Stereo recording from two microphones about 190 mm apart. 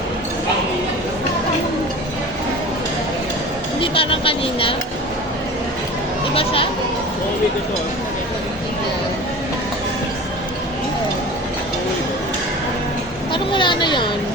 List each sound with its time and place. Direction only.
3.8 s speech: 30° left (ahead or behind)
6.3 s speech: 30° left (ahead or behind)
13.3 s a sound: 25° left (ahead or behind)